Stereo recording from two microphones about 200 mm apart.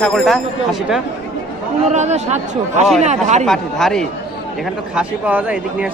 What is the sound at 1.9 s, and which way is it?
Speech, 35° right (ahead or behind).